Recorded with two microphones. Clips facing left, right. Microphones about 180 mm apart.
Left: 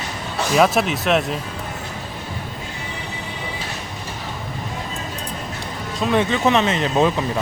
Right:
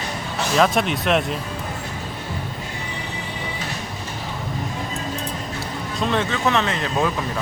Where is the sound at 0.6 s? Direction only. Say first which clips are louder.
Left 2 dB; 5° left (ahead or behind).